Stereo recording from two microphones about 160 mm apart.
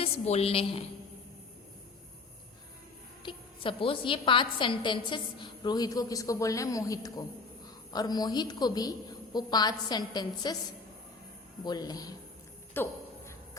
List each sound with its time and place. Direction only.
0.0 s a woman's voice: 40° left (ahead or behind)
3.2 s a woman's voice: 35° left (ahead or behind)
11.6 s a woman's voice: 25° left (ahead or behind)
12.7 s a sound: 15° left (ahead or behind)